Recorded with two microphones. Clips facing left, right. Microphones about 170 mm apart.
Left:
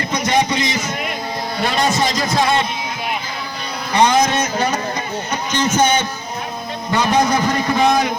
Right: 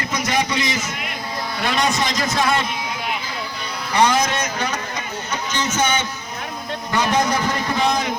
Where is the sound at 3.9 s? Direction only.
25° left (ahead or behind).